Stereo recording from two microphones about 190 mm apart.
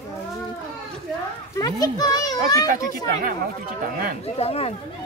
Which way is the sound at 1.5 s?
20° left (ahead or behind).